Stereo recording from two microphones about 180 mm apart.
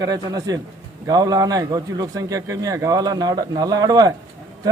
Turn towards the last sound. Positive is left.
turn(degrees=-20)  # may be behind; listen again after turning